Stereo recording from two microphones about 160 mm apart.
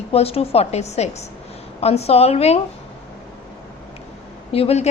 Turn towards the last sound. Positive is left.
turn(degrees=40)  # may be behind; listen again after turning